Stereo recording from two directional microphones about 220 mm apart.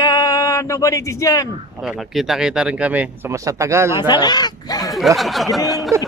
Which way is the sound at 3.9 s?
20° left (ahead or behind).